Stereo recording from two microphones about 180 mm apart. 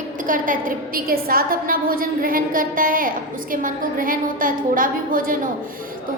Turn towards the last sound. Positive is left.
turn(degrees=-50)  # may be behind; listen again after turning